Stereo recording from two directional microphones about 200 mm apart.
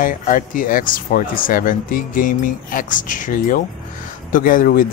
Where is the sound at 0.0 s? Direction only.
45° left (ahead or behind).